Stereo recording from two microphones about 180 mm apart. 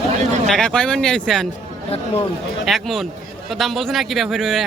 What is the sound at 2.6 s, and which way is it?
A man's voice, centre (ahead or behind).